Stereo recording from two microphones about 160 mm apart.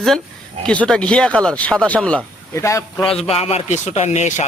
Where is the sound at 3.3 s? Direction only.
40° left (ahead or behind).